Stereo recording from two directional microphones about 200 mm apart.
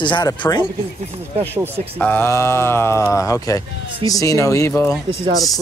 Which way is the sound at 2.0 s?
10° left (ahead or behind).